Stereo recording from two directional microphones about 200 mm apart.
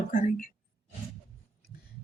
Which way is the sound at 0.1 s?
40° left (ahead or behind).